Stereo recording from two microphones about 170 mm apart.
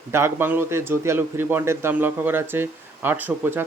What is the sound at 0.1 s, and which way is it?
A man's voice, 15° right (ahead or behind).